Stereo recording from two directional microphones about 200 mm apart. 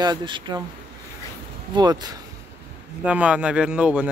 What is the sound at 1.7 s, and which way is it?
Speech, 20° right (ahead or behind).